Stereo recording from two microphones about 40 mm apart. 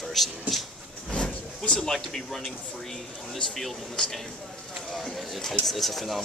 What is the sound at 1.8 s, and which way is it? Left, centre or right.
Speech, centre.